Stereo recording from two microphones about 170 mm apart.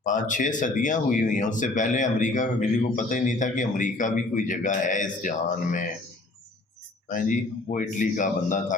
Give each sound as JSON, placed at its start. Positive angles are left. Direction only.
{"t": 0.0, "sound": "speech", "side_deg": 50}
{"t": 7.1, "sound": "speech", "side_deg": 50}